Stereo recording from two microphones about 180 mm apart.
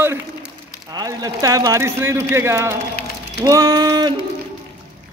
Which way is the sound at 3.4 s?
20° right (ahead or behind).